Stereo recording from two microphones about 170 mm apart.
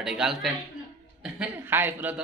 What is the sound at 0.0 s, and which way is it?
Speech, 5° right (ahead or behind).